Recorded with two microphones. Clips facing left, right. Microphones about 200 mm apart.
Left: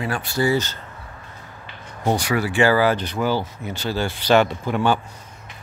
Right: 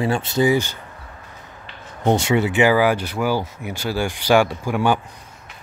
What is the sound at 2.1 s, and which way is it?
Speech, 25° right (ahead or behind).